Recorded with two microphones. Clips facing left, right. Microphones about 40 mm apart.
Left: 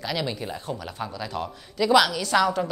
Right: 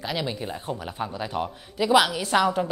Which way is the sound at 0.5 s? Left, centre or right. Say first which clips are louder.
Right 1 dB; right.